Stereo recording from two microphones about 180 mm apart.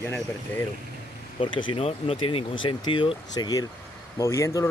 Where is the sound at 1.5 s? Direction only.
30° left (ahead or behind).